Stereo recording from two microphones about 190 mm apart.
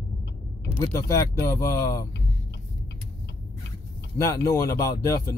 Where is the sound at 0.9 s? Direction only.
15° left (ahead or behind).